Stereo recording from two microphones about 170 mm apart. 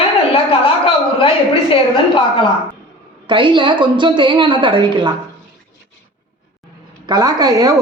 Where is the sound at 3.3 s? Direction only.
30° right (ahead or behind).